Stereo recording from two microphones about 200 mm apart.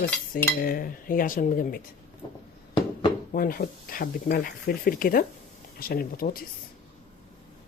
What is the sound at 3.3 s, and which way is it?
Speech, 45° left (ahead or behind).